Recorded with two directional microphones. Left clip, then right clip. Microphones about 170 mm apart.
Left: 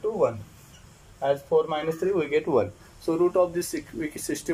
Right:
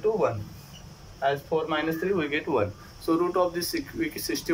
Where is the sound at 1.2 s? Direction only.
35° left (ahead or behind).